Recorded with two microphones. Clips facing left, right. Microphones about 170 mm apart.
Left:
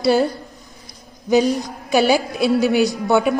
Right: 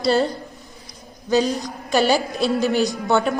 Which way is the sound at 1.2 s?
15° left (ahead or behind).